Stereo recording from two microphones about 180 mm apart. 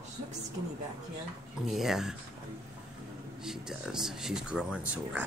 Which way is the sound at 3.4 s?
5° right (ahead or behind).